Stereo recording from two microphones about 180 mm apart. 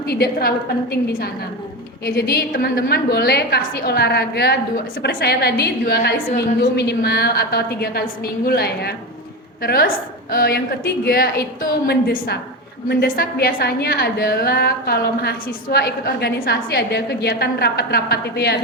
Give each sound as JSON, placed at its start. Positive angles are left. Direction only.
{"t": 0.0, "sound": "a woman's voice", "side_deg": 60}